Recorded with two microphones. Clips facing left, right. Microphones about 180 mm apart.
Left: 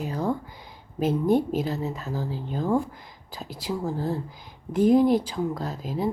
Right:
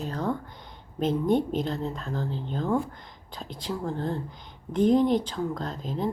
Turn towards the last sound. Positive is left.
turn(degrees=5)  # may be behind; listen again after turning